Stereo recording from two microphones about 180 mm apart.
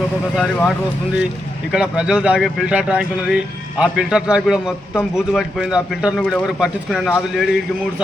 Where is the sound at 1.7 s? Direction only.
5° right (ahead or behind).